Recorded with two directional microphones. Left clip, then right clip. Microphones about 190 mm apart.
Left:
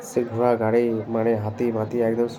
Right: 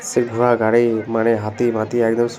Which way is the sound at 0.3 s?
5° right (ahead or behind).